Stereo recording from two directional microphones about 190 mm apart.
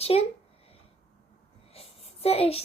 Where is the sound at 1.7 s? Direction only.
30° left (ahead or behind).